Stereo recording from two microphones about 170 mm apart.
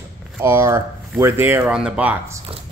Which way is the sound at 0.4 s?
15° right (ahead or behind).